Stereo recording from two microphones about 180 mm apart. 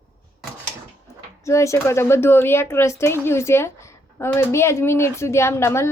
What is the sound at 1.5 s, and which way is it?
Speech, 15° left (ahead or behind).